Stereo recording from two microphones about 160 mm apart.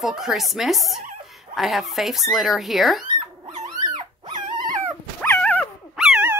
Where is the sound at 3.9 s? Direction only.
30° right (ahead or behind).